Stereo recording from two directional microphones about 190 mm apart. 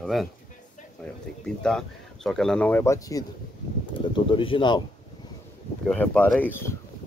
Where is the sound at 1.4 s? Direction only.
5° left (ahead or behind); by 4.8 s 25° left (ahead or behind).